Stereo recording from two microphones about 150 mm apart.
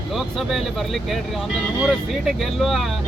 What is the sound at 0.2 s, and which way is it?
Speech, centre (ahead or behind).